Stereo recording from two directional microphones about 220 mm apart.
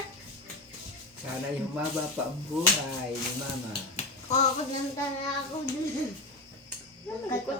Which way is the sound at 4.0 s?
30° left (ahead or behind).